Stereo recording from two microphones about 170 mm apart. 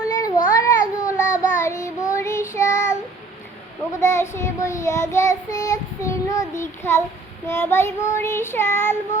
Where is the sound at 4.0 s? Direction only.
15° left (ahead or behind).